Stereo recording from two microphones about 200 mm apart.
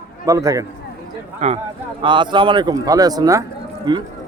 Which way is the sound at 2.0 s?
25° right (ahead or behind).